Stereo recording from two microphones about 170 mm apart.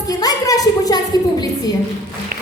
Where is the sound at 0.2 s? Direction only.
20° left (ahead or behind).